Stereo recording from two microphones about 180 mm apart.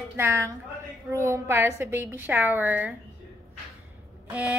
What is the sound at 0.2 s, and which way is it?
A woman's voice, 15° right (ahead or behind).